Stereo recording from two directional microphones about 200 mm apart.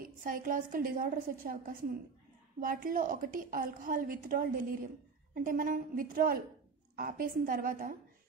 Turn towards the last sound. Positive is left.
turn(degrees=-45)  # may be behind; listen again after turning